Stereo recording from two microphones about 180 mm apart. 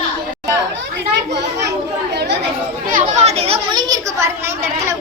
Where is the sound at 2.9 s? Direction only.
40° right (ahead or behind).